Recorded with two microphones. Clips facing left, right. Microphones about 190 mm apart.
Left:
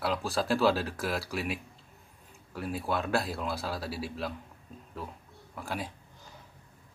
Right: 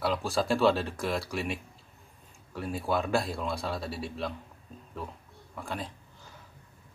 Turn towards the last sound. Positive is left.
turn(degrees=5)  # may be behind; listen again after turning